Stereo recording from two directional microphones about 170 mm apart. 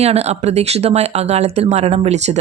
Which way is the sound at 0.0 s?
40° right (ahead or behind).